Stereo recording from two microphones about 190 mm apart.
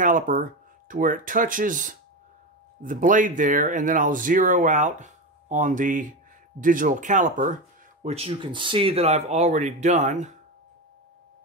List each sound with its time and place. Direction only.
0.0 s speech: 45° right (ahead or behind)